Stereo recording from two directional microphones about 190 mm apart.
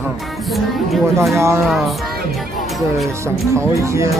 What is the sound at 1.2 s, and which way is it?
Speech, 15° right (ahead or behind).